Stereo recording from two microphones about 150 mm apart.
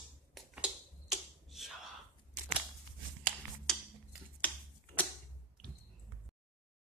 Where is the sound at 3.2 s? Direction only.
5° left (ahead or behind).